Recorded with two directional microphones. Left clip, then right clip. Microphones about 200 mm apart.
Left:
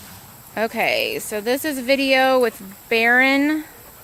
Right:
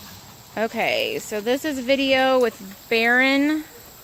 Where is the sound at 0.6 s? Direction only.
Centre (ahead or behind).